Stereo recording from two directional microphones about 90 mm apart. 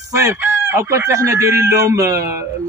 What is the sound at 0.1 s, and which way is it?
Chicken, 35° right (ahead or behind).